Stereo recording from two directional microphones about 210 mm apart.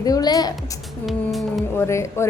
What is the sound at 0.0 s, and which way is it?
Speech, 20° left (ahead or behind).